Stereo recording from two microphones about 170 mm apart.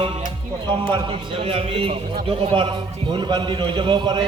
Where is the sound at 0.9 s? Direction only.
30° right (ahead or behind).